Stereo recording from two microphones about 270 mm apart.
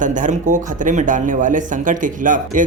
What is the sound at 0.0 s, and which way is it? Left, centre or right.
Speech, right.